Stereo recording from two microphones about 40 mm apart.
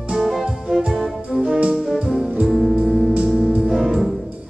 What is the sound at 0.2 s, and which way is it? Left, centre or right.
Music, centre.